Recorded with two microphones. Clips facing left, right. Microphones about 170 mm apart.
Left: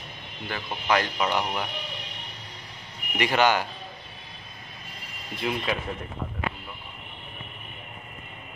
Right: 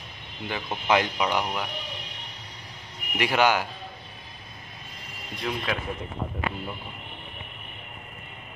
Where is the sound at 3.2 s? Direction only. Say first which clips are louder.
Even; 10° right (ahead or behind).